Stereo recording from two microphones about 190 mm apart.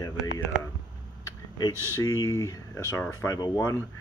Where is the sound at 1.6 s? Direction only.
20° left (ahead or behind).